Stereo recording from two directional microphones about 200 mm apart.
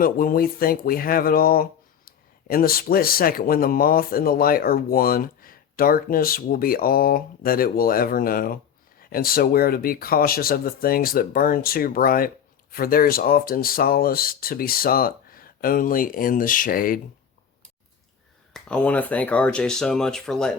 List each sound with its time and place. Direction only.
0.0 s speech: 45° left (ahead or behind)
18.5 s speech: 5° left (ahead or behind)